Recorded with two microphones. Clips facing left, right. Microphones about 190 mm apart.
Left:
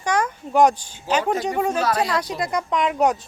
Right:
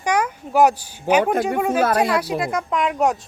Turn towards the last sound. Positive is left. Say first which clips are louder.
# even
turn(degrees=0)  # may be behind; listen again after turning